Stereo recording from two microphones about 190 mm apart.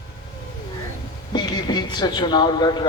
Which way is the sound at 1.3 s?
20° left (ahead or behind).